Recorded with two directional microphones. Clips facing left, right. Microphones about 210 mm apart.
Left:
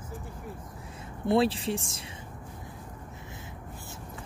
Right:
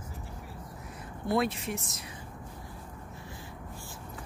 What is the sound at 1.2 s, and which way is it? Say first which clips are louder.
Speech: left 4 dB; 30° left (ahead or behind).